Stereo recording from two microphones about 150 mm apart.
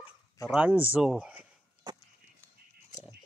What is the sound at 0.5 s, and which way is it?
Speech, 10° right (ahead or behind).